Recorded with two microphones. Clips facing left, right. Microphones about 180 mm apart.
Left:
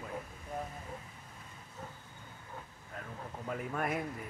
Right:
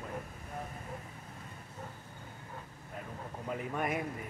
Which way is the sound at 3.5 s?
5° right (ahead or behind).